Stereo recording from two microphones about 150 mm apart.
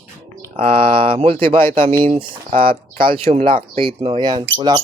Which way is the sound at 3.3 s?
45° right (ahead or behind).